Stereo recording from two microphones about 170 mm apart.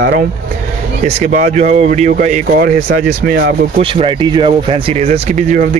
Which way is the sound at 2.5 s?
60° right (ahead or behind).